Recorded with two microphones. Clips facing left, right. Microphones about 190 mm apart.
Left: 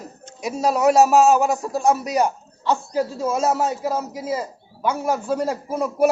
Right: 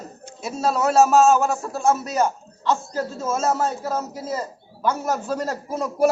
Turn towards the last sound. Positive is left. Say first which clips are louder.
# left 1 dB
turn(degrees=10)  # may be behind; listen again after turning